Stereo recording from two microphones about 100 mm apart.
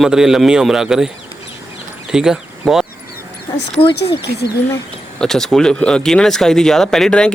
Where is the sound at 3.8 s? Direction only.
60° left (ahead or behind).